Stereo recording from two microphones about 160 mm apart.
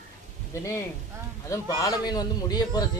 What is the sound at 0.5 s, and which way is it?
A man's voice, 20° left (ahead or behind).